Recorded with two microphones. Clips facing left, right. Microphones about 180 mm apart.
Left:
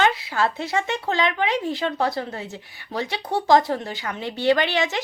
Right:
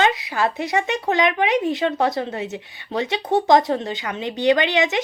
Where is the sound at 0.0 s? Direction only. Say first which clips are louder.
Right 1 dB; 15° right (ahead or behind).